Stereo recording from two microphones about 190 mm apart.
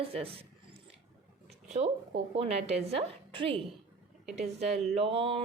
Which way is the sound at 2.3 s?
35° right (ahead or behind).